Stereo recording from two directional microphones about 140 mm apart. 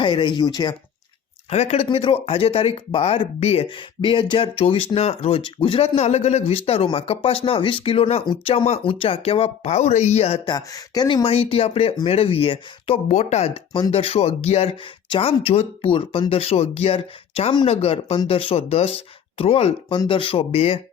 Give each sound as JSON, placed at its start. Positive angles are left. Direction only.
{"t": 0.0, "sound": "speech", "side_deg": 35}
{"t": 1.5, "sound": "speech", "side_deg": 50}
{"t": 10.5, "sound": "speech", "side_deg": 25}
{"t": 13.1, "sound": "speech", "side_deg": 55}